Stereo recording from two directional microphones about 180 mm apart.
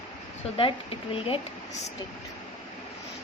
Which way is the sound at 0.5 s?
30° left (ahead or behind).